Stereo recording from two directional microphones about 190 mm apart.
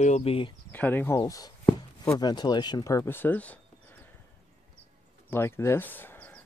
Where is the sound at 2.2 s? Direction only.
20° left (ahead or behind).